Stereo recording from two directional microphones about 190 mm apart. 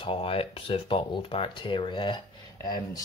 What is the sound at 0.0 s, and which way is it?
Speech, 30° left (ahead or behind).